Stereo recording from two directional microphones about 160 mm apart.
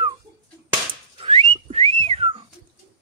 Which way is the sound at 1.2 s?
35° right (ahead or behind).